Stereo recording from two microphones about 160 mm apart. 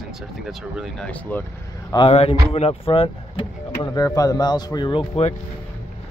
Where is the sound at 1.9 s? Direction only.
35° left (ahead or behind).